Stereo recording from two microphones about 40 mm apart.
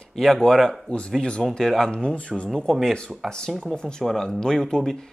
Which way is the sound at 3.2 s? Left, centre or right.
Centre.